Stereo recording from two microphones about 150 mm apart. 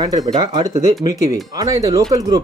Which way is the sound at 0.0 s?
25° right (ahead or behind).